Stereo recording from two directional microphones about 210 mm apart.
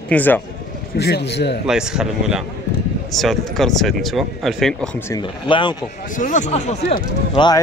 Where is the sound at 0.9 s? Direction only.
50° left (ahead or behind).